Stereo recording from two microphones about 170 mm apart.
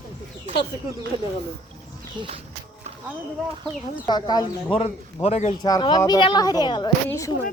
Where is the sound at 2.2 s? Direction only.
35° right (ahead or behind).